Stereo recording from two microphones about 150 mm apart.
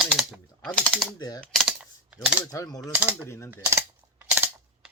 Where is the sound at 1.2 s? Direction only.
25° left (ahead or behind).